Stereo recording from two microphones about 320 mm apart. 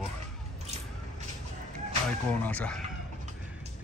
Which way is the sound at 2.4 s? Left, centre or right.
Centre.